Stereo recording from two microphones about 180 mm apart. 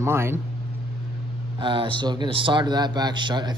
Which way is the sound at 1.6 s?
25° right (ahead or behind).